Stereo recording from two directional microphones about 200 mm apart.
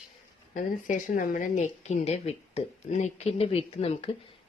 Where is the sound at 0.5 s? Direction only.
40° left (ahead or behind).